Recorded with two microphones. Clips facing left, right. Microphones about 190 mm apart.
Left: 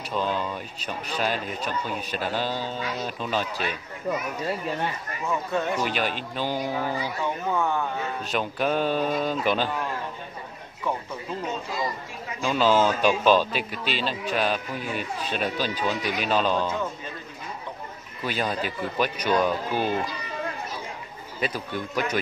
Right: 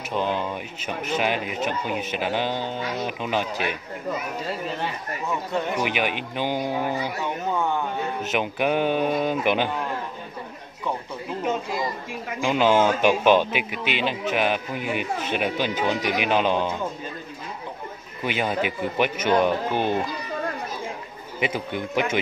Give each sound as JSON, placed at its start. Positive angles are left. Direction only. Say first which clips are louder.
{"t": 0.1, "sound": "a man's voice", "louder": "right 2 dB", "side_deg": -20}
{"t": 5.5, "sound": "a man's voice", "louder": "right 2 dB", "side_deg": -15}
{"t": 12.4, "sound": "a man's voice", "louder": "right 2 dB", "side_deg": -15}
{"t": 18.2, "sound": "a man's voice", "louder": "right 3 dB", "side_deg": -20}
{"t": 21.4, "sound": "a man's voice", "louder": "right 3 dB", "side_deg": -20}